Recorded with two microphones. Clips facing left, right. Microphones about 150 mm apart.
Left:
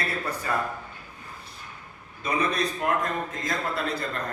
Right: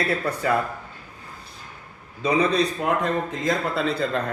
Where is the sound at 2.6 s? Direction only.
70° right (ahead or behind).